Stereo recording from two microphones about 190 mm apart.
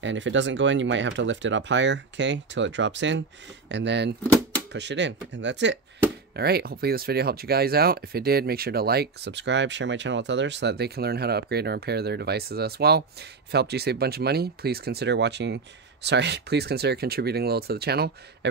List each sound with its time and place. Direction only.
0.0 s speech: 75° right (ahead or behind)
6.3 s speech: 55° right (ahead or behind)